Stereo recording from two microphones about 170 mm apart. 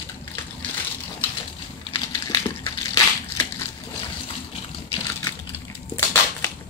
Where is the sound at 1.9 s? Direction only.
30° left (ahead or behind).